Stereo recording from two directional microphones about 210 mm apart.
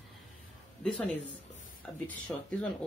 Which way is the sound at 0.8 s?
5° left (ahead or behind).